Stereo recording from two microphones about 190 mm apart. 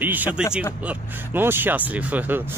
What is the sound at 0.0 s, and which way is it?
Speech, 10° right (ahead or behind).